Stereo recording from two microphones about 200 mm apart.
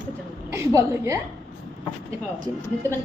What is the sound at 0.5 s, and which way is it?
Speech, 15° right (ahead or behind).